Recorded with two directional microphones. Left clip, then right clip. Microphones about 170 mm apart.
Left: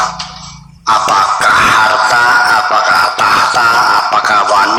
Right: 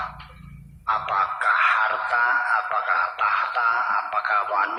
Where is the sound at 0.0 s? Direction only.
40° left (ahead or behind).